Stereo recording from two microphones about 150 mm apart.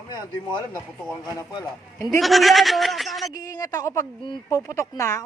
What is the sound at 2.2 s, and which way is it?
Speech, centre (ahead or behind).